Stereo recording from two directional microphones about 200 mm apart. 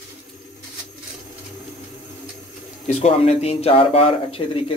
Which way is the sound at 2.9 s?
30° left (ahead or behind).